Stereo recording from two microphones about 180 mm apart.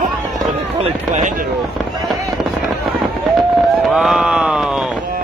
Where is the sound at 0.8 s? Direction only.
40° right (ahead or behind).